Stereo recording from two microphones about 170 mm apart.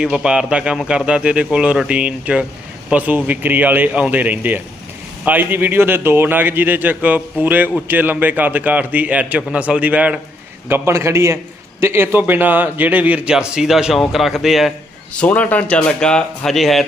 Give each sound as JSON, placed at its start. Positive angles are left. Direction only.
{"t": 0.0, "sound": "a man's voice", "side_deg": -5}